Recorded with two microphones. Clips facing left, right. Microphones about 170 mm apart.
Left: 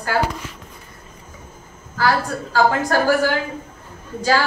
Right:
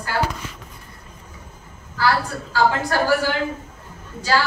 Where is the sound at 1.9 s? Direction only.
45° left (ahead or behind).